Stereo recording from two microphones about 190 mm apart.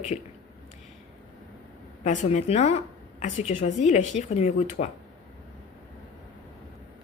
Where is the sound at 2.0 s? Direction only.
40° left (ahead or behind).